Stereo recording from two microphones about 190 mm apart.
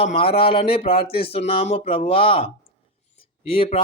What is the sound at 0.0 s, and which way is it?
Speech, 30° left (ahead or behind).